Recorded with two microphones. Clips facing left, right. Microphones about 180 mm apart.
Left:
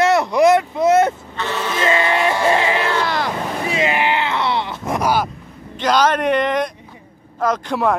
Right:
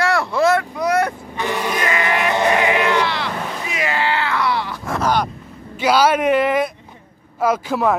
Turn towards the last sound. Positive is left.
turn(degrees=-5)  # may be behind; listen again after turning